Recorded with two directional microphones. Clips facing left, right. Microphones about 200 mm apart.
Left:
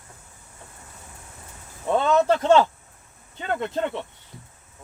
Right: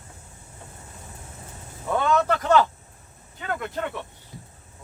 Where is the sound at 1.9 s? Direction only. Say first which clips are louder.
Left 3 dB; 25° left (ahead or behind).